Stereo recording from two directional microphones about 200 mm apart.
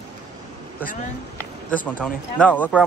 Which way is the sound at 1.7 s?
5° left (ahead or behind).